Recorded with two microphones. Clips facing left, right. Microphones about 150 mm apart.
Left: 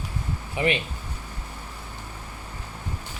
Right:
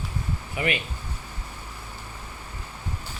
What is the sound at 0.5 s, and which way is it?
Speech, 30° left (ahead or behind).